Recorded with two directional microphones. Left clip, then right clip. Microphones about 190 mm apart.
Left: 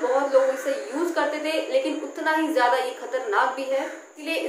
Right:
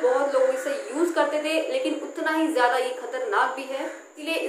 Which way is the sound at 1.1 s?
10° right (ahead or behind).